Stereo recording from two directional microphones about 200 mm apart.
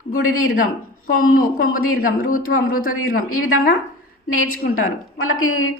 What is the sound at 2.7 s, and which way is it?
Speech, 45° left (ahead or behind).